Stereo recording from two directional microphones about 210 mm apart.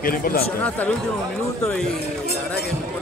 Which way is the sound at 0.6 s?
5° left (ahead or behind).